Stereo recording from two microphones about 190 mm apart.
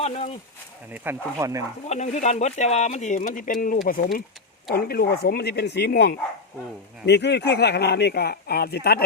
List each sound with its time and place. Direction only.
1.1 s speech: 10° right (ahead or behind)
1.9 s speech: 40° left (ahead or behind); by 9.0 s 55° left (ahead or behind)